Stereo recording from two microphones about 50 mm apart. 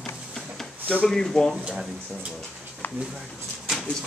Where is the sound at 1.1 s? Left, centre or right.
Centre.